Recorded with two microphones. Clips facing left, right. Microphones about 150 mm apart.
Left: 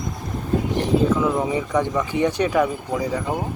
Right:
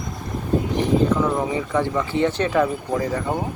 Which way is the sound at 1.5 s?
15° left (ahead or behind).